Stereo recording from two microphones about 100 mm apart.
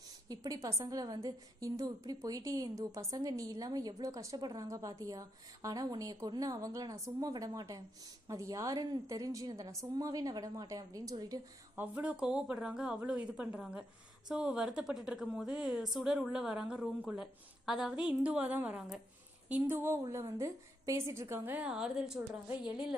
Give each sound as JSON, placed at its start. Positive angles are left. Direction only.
{"t": 0.3, "sound": "a woman's voice", "side_deg": -35}
{"t": 11.7, "sound": "a woman's voice", "side_deg": -20}
{"t": 21.6, "sound": "a woman's voice", "side_deg": -10}